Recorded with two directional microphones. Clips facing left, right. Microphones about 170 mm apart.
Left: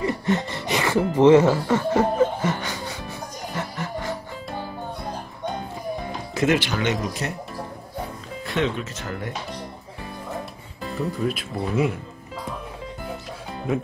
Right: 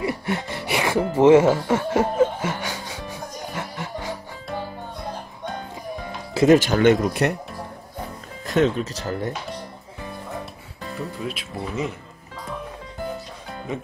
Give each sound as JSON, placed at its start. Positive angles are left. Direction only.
{"t": 0.0, "sound": "speech", "side_deg": -10}
{"t": 3.5, "sound": "a sound", "side_deg": -15}
{"t": 6.3, "sound": "speech", "side_deg": -40}
{"t": 8.5, "sound": "speech", "side_deg": -40}
{"t": 11.2, "sound": "speech", "side_deg": 5}